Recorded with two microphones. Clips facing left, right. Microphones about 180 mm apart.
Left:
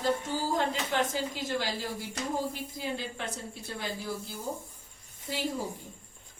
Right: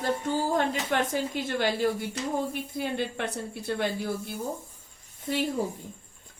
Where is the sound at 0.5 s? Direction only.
60° right (ahead or behind).